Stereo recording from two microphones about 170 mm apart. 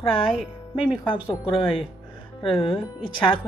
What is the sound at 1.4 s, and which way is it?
A woman's voice, 30° left (ahead or behind).